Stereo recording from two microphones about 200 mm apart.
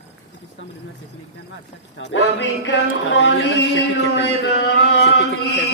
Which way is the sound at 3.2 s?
60° left (ahead or behind).